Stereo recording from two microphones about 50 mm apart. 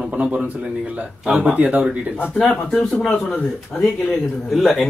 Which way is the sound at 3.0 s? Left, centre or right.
Centre.